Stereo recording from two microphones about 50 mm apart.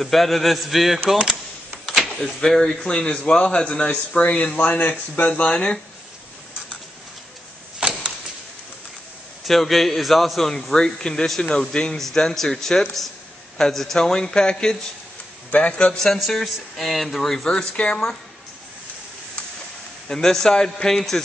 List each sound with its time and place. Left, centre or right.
0.0 s a man's voice: centre
2.1 s speech: centre; by 5.5 s left
5.5 s speech: centre
7.8 s a sound: right
9.5 s a man's voice: centre; by 16.0 s left
16.0 s a man's voice: centre
17.7 s speech: left
20.1 s speech: centre